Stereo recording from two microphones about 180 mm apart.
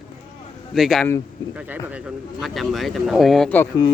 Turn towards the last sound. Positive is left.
turn(degrees=10)  # may be behind; listen again after turning